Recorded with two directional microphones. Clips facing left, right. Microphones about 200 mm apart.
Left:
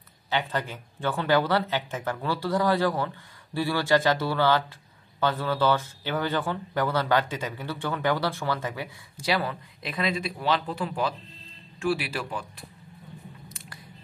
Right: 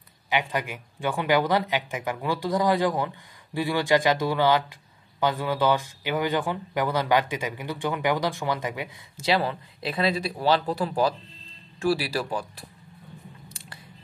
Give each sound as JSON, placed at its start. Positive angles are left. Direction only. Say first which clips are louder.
{"t": 0.3, "sound": "speech", "louder": "right 1 dB", "side_deg": -15}